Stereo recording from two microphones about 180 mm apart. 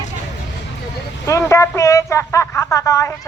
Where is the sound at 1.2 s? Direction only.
15° left (ahead or behind).